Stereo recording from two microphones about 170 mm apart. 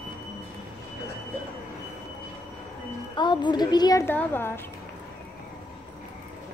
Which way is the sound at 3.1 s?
25° left (ahead or behind).